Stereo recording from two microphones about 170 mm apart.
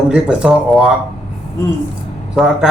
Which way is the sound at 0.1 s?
5° right (ahead or behind).